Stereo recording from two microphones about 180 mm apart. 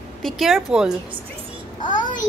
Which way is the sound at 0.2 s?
Centre (ahead or behind).